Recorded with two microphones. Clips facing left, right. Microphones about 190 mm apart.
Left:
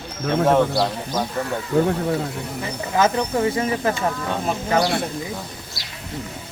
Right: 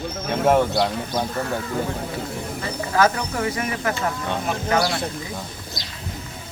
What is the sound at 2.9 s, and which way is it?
Speech, 25° left (ahead or behind).